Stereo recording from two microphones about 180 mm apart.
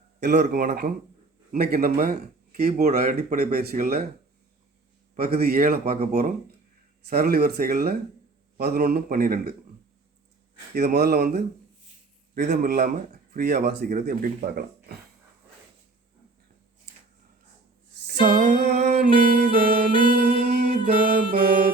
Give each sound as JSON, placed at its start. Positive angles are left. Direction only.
{"t": 0.2, "sound": "speech", "side_deg": -70}
{"t": 0.5, "sound": "speech", "side_deg": -60}
{"t": 5.1, "sound": "speech", "side_deg": -60}
{"t": 6.0, "sound": "speech", "side_deg": -40}
{"t": 7.1, "sound": "speech", "side_deg": -60}
{"t": 10.8, "sound": "a man's voice", "side_deg": -60}
{"t": 18.2, "sound": "music", "side_deg": -45}
{"t": 18.9, "sound": "music", "side_deg": -60}
{"t": 20.7, "sound": "music", "side_deg": -45}